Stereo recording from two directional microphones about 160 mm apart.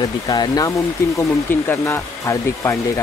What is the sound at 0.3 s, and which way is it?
Speech, 25° left (ahead or behind).